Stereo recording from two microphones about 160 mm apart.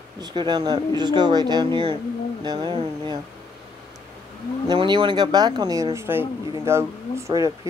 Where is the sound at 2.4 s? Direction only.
30° right (ahead or behind).